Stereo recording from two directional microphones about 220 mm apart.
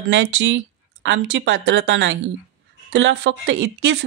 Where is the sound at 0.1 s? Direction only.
55° right (ahead or behind).